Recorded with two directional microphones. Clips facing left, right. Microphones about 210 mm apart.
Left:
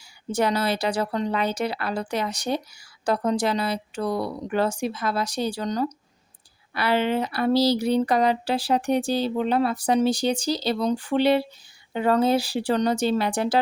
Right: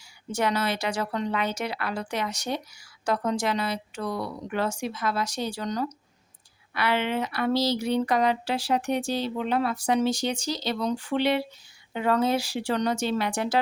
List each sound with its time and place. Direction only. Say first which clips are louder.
0.3 s speech: left 3 dB; 35° left (ahead or behind)